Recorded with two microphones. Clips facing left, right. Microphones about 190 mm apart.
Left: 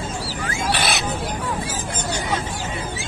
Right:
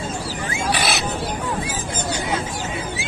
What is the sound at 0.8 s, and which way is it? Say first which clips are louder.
Bird: right 1 dB; centre (ahead or behind).